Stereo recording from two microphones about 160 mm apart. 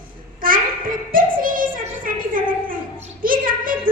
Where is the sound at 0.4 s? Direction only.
60° right (ahead or behind).